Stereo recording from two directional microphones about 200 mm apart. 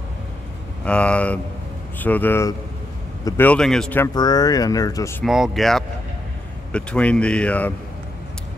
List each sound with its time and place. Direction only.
0.8 s a man's voice: 5° left (ahead or behind)
4.1 s speech: 20° left (ahead or behind)
5.2 s a man's voice: centre (ahead or behind)